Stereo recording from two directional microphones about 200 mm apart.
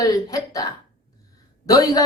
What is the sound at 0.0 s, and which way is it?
A woman's voice, 20° left (ahead or behind).